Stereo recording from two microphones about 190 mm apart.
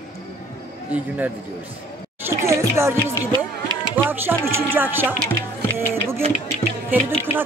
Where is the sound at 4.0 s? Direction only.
10° right (ahead or behind).